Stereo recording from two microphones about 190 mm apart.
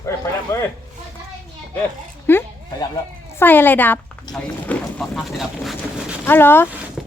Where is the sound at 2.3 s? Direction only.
10° left (ahead or behind).